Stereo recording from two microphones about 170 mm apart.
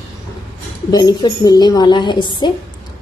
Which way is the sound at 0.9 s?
20° left (ahead or behind).